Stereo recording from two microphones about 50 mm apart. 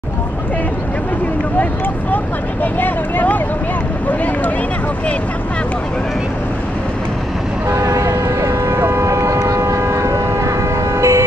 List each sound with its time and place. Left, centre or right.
2.6 s speech: left
7.8 s vehicle: right
11.0 s train: right